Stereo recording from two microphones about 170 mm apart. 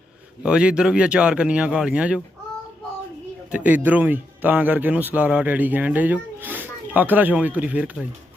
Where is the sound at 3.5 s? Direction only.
10° right (ahead or behind).